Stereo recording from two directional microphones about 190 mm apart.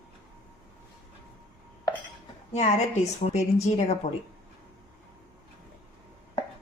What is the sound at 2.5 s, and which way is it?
A woman's voice, 35° left (ahead or behind).